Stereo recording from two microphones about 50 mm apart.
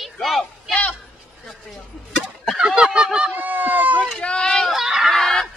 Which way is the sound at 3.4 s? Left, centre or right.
Right.